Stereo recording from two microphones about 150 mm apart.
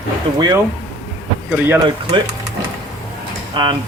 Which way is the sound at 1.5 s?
15° right (ahead or behind).